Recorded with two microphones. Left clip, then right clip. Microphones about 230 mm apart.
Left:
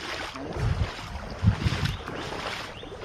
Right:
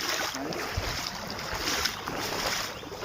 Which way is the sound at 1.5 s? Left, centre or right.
Right.